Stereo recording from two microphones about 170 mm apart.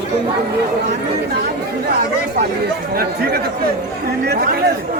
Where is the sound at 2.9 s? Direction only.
65° right (ahead or behind).